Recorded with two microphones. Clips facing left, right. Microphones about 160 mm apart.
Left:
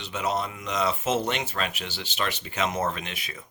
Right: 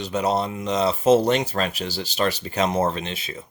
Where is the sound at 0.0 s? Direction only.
35° right (ahead or behind).